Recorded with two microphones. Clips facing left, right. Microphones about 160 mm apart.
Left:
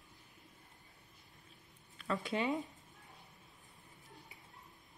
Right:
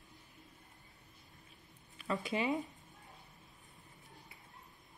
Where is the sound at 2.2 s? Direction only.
Centre (ahead or behind).